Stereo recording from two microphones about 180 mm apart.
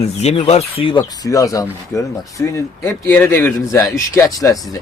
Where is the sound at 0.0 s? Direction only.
35° left (ahead or behind).